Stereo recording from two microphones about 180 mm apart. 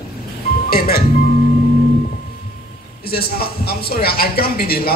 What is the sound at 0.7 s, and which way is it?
Speech, 55° left (ahead or behind).